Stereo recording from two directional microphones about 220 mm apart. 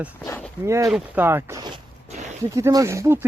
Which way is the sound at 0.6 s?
10° right (ahead or behind).